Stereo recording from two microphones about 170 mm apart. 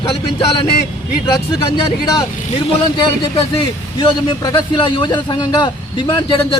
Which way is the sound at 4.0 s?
30° left (ahead or behind).